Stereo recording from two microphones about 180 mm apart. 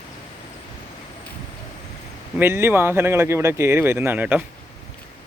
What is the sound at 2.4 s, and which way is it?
Speech, 15° right (ahead or behind).